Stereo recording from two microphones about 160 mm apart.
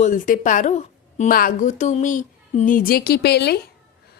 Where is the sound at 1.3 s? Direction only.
60° left (ahead or behind); by 3.6 s 90° left.